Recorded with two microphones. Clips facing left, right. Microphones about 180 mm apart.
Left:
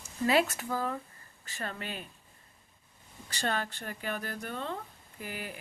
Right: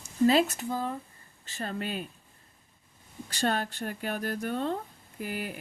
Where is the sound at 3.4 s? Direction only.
45° right (ahead or behind).